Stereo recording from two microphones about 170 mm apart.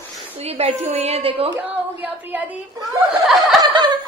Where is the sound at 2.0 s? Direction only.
5° right (ahead or behind).